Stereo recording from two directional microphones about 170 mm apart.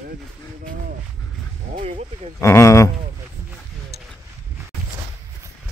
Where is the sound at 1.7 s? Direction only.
40° right (ahead or behind).